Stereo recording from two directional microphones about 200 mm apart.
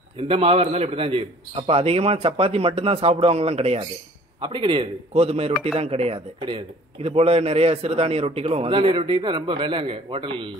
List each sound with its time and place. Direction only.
0.2 s speech: 30° right (ahead or behind)